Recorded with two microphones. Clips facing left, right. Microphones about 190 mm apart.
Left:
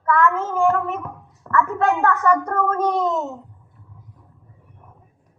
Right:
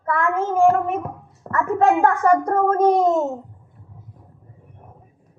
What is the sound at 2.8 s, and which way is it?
Speech, 30° right (ahead or behind).